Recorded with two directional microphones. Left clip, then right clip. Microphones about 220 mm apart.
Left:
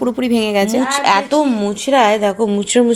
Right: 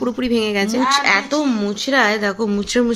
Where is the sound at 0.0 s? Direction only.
15° left (ahead or behind).